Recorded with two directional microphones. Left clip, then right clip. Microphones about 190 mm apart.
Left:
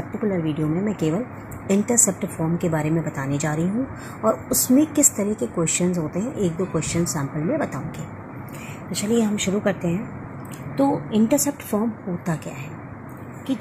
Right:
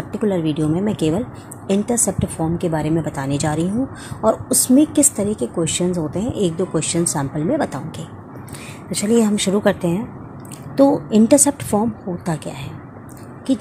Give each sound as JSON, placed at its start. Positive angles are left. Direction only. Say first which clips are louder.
{"t": 0.3, "sound": "speech", "louder": "right 5 dB", "side_deg": -55}
{"t": 1.7, "sound": "a woman's voice", "louder": "right 1 dB", "side_deg": -30}
{"t": 9.0, "sound": "speech", "louder": "right 5 dB", "side_deg": -55}
{"t": 10.8, "sound": "a woman's voice", "louder": "right 7 dB", "side_deg": -70}